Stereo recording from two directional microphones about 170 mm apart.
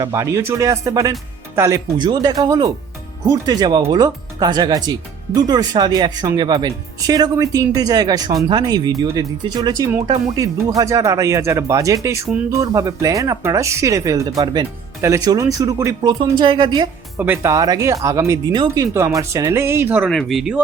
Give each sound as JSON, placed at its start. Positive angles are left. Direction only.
{"t": 0.0, "sound": "speech", "side_deg": -15}
{"t": 17.2, "sound": "speech", "side_deg": -10}
{"t": 20.1, "sound": "speech", "side_deg": 0}